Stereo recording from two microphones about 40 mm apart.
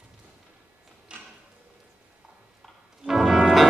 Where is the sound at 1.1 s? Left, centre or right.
Right.